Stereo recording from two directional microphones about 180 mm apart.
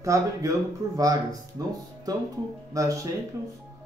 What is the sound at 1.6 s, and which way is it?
Speech, 20° right (ahead or behind).